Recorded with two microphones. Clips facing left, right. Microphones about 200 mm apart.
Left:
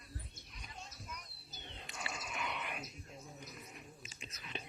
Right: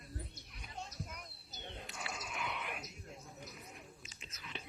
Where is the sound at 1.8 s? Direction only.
Centre (ahead or behind).